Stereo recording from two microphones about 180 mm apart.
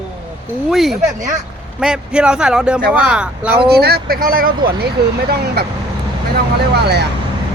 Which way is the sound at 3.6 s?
60° right (ahead or behind).